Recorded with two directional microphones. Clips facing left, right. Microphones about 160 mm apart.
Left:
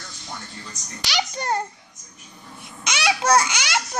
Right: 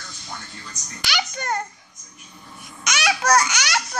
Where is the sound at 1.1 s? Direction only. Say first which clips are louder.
Left 2 dB; 30° left (ahead or behind).